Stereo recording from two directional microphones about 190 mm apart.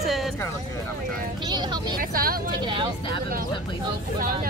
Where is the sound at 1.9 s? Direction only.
50° right (ahead or behind).